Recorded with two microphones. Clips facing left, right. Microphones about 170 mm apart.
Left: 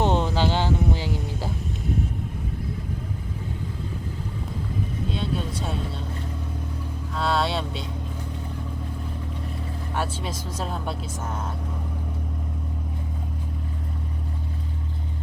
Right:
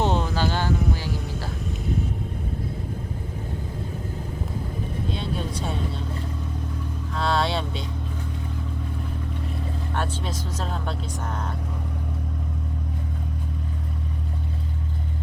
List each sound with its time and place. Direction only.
0.0 s a sound: 20° left (ahead or behind)
7.2 s music: 5° left (ahead or behind)
9.9 s vehicle: 10° left (ahead or behind)